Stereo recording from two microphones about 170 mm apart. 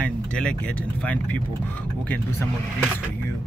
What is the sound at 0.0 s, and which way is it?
Speech, 5° left (ahead or behind).